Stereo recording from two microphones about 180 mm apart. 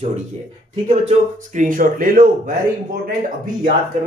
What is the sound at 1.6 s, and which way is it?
Speech, 50° right (ahead or behind).